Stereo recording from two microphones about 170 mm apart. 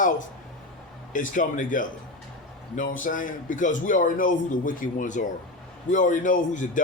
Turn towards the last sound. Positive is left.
turn(degrees=50)  # may be behind; listen again after turning